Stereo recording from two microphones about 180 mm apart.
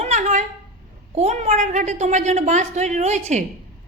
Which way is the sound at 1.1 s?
35° right (ahead or behind).